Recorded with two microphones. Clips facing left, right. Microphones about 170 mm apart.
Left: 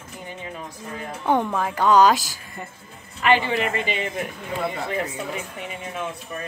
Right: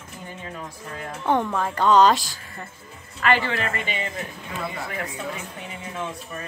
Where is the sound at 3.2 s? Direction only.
20° left (ahead or behind).